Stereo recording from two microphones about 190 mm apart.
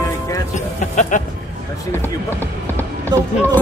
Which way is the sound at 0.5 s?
40° left (ahead or behind).